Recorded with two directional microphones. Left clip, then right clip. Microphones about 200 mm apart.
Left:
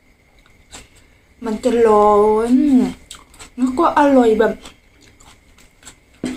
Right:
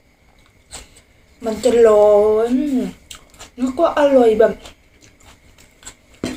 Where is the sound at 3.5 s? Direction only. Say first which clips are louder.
Left 2 dB; 15° left (ahead or behind).